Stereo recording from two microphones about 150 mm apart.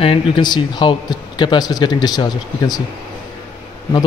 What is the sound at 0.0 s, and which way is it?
Speech, 35° left (ahead or behind).